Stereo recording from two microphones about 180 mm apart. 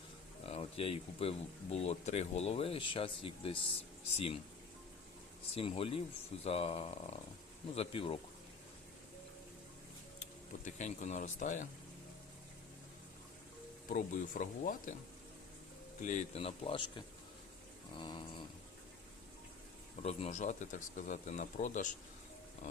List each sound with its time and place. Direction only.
0.4 s speech: 35° left (ahead or behind)
5.5 s speech: 30° left (ahead or behind)
10.7 s speech: 40° left (ahead or behind)
13.8 s speech: 50° left (ahead or behind)
16.0 s speech: 45° left (ahead or behind); by 17.0 s 30° left (ahead or behind)
17.9 s a sound: 25° left (ahead or behind)
20.0 s speech: 35° left (ahead or behind)